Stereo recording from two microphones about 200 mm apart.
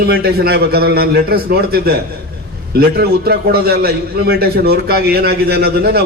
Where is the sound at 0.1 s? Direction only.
50° right (ahead or behind).